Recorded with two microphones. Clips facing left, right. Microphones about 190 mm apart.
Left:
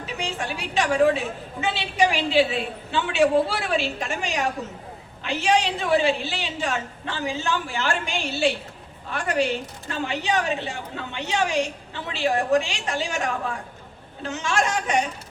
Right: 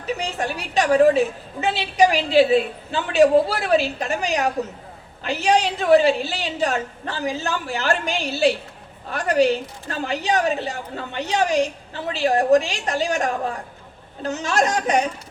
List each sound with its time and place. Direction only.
0.0 s a woman's voice: 40° right (ahead or behind)